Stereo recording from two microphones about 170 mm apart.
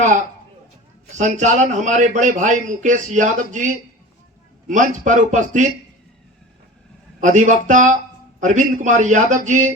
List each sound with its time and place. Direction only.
0.0 s a man's voice: 45° right (ahead or behind)
4.7 s a man's voice: 50° right (ahead or behind)
7.2 s a man's voice: 50° right (ahead or behind)